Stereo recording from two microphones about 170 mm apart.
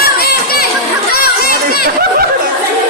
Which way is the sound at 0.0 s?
65° left (ahead or behind).